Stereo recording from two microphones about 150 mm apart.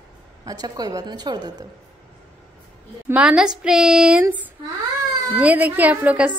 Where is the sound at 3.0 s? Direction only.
5° right (ahead or behind).